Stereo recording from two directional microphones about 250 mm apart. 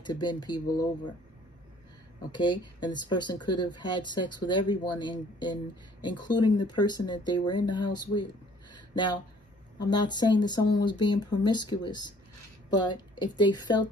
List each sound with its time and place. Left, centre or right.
0.0 s speech: centre
2.3 s speech: centre
8.7 s a sound: centre
9.8 s speech: centre